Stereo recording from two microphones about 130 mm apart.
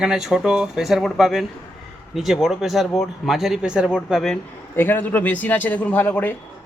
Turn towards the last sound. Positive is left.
turn(degrees=15)  # may be behind; listen again after turning